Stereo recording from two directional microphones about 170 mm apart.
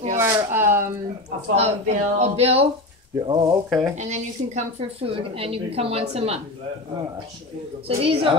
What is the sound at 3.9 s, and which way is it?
A woman's voice, 45° right (ahead or behind).